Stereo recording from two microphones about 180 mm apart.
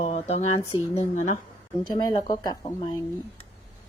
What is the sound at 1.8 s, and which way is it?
Speech, 25° left (ahead or behind).